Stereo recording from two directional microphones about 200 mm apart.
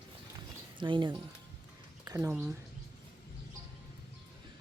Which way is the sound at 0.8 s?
25° right (ahead or behind).